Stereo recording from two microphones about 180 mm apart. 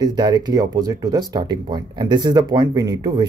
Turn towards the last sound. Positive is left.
turn(degrees=-25)  # may be behind; listen again after turning